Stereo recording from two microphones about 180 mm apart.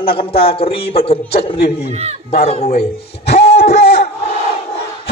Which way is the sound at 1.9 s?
35° right (ahead or behind).